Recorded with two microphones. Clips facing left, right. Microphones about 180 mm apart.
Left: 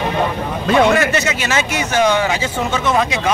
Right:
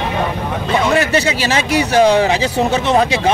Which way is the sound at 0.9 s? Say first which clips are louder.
Right 2 dB; 30° right (ahead or behind).